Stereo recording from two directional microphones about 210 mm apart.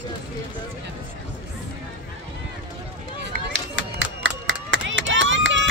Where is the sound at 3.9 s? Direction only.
65° right (ahead or behind).